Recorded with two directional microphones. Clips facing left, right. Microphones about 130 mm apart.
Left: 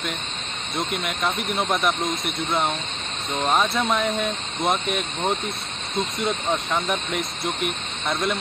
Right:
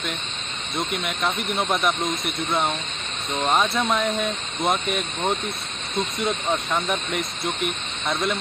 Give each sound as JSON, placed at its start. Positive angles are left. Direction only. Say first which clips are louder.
{"t": 0.7, "sound": "speech", "louder": "even", "side_deg": 0}